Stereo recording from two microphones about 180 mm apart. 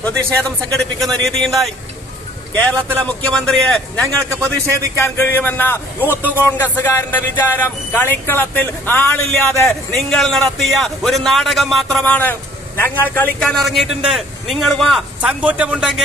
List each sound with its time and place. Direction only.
0.0 s a man's voice: 5° left (ahead or behind)
3.1 s a man's voice: 5° left (ahead or behind)
4.5 s a man's voice: 15° left (ahead or behind); by 16.0 s 5° right (ahead or behind)